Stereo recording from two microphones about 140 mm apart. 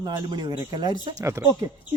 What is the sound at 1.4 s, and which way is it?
Speech, 20° right (ahead or behind).